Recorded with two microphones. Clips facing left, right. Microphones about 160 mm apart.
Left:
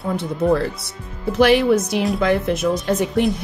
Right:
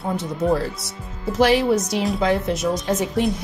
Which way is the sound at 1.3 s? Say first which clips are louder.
Left 3 dB; 60° left (ahead or behind).